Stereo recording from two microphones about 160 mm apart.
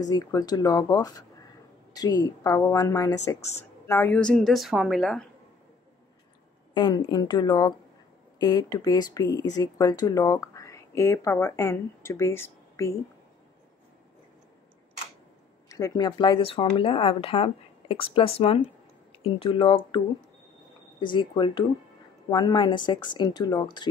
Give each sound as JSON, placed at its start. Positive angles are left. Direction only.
{"t": 0.1, "sound": "speech", "side_deg": 20}
{"t": 3.3, "sound": "speech", "side_deg": 45}
{"t": 3.8, "sound": "a woman's voice", "side_deg": 15}
{"t": 6.7, "sound": "speech", "side_deg": 25}
{"t": 15.7, "sound": "speech", "side_deg": 20}
{"t": 21.0, "sound": "speech", "side_deg": 30}